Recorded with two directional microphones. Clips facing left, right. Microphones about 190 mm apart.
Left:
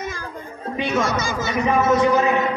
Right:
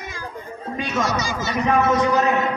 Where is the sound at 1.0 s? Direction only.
50° left (ahead or behind).